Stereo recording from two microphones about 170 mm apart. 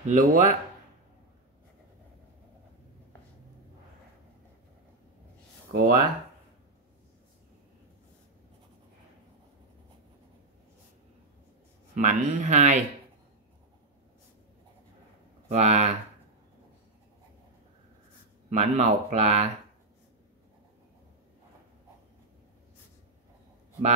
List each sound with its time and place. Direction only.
0.1 s speech: 50° right (ahead or behind)
5.7 s speech: 55° right (ahead or behind)
11.9 s speech: 45° right (ahead or behind)
15.4 s speech: 40° right (ahead or behind)
18.5 s speech: 40° right (ahead or behind)